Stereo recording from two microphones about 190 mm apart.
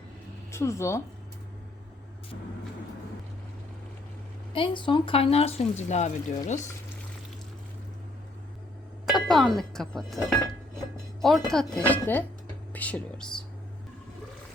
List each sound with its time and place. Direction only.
0.5 s speech: 15° left (ahead or behind)
4.5 s speech: 25° left (ahead or behind)
9.0 s speech: centre (ahead or behind)
11.2 s speech: centre (ahead or behind)